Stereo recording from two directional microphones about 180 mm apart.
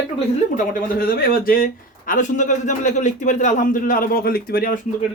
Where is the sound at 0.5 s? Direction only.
50° left (ahead or behind).